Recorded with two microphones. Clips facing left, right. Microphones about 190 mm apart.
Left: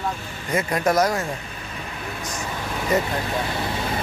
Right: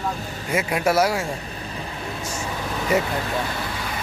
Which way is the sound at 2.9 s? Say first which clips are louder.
Even; 10° right (ahead or behind).